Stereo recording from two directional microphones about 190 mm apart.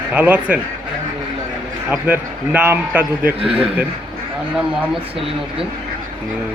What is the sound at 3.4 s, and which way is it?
Speech, 30° right (ahead or behind).